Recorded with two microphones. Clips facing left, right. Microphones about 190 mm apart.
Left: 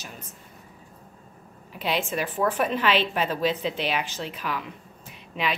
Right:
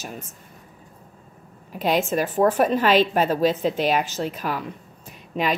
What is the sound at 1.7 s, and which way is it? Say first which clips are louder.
A woman's voice: right 6 dB; 45° right (ahead or behind).